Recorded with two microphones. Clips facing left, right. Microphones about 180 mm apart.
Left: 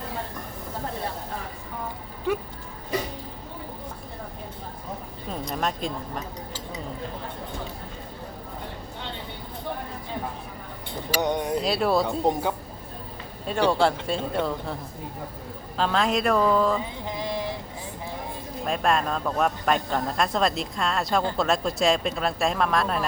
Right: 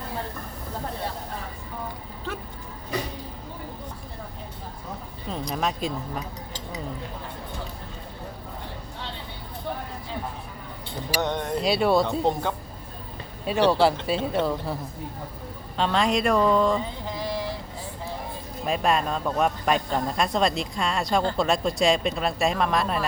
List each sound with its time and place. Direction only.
2.3 s music: 15° left (ahead or behind)
5.3 s speech: centre (ahead or behind)
11.2 s speech: 10° left (ahead or behind)
11.6 s speech: centre (ahead or behind)
15.8 s speech: centre (ahead or behind)
17.1 s a sound: 20° left (ahead or behind)
18.6 s speech: centre (ahead or behind)